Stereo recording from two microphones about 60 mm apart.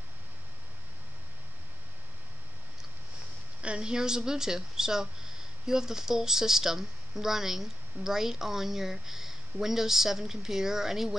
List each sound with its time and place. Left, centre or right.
3.6 s speech: centre